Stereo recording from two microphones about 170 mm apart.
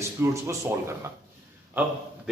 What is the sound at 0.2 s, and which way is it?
Speech, 15° right (ahead or behind).